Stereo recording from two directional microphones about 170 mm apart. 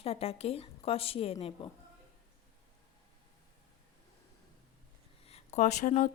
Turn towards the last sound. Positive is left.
turn(degrees=45)  # may be behind; listen again after turning